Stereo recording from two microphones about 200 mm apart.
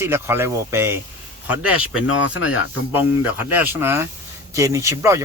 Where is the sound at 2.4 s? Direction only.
10° right (ahead or behind).